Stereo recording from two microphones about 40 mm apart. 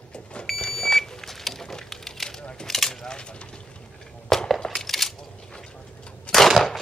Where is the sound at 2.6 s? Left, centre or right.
Centre.